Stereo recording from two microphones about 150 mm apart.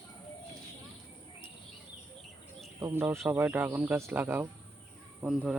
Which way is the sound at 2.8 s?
15° right (ahead or behind).